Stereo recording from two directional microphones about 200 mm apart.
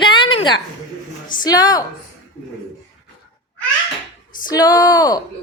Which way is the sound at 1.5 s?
20° left (ahead or behind).